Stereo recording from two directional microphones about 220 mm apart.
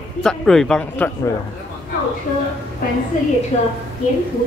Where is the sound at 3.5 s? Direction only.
30° left (ahead or behind).